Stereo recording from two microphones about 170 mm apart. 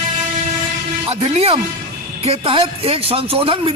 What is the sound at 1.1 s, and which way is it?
Speech, 35° right (ahead or behind).